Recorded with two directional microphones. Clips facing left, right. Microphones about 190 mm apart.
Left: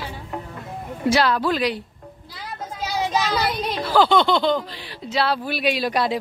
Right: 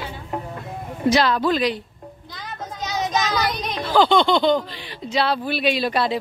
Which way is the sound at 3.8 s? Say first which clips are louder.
Right 1 dB; 5° left (ahead or behind).